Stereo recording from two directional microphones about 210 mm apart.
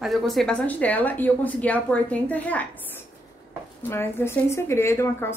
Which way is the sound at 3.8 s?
10° left (ahead or behind).